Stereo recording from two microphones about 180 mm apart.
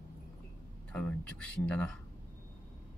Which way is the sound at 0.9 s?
10° left (ahead or behind).